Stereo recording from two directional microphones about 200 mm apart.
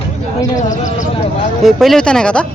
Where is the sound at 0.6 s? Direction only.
40° left (ahead or behind).